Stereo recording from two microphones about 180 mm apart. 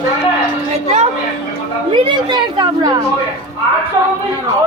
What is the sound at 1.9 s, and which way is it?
A woman's voice, 25° right (ahead or behind).